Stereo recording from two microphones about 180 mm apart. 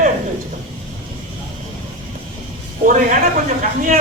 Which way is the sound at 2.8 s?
45° right (ahead or behind).